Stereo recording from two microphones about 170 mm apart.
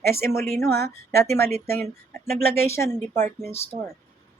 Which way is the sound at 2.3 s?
65° right (ahead or behind).